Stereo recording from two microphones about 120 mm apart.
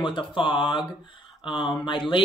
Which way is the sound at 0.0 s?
40° left (ahead or behind).